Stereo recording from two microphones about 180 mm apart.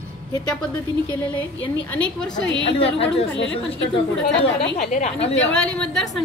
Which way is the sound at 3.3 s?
90° left.